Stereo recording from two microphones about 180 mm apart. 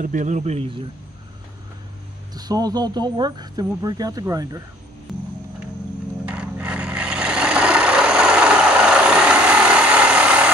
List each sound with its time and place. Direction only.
0.0 s speech: 45° right (ahead or behind)
2.3 s speech: 20° right (ahead or behind)
5.1 s music: centre (ahead or behind)
6.2 s vehicle: 5° right (ahead or behind)